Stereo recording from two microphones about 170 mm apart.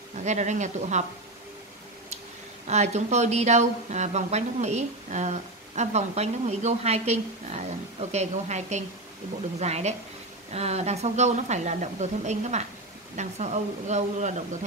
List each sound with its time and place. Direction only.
0.1 s speech: 45° right (ahead or behind)
2.6 s a woman's voice: 40° right (ahead or behind)